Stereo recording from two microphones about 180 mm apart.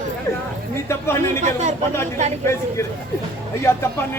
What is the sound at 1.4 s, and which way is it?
Speech, 40° right (ahead or behind).